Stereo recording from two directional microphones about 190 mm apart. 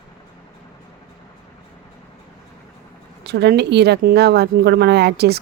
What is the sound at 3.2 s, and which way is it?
Speech, 60° right (ahead or behind).